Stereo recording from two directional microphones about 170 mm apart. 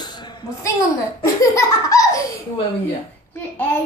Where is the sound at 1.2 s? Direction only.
20° left (ahead or behind).